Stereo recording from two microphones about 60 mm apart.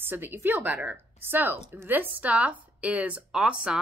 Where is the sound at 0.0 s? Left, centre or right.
Right.